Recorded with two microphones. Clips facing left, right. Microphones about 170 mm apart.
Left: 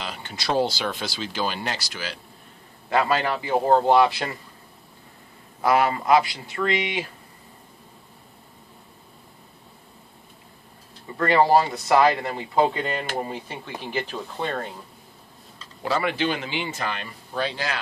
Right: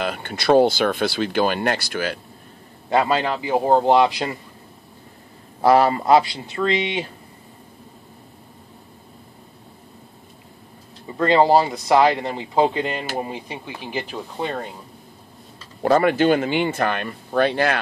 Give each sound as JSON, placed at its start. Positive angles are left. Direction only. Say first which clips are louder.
{"t": 0.0, "sound": "speech", "louder": "right 8 dB", "side_deg": -55}
{"t": 2.9, "sound": "speech", "louder": "right 3 dB", "side_deg": -25}
{"t": 5.6, "sound": "speech", "louder": "right 5 dB", "side_deg": -35}
{"t": 11.1, "sound": "speech", "louder": "right 3 dB", "side_deg": -20}
{"t": 15.8, "sound": "speech", "louder": "right 8 dB", "side_deg": -50}